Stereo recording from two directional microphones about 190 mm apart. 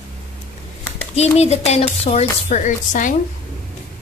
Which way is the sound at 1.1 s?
35° left (ahead or behind).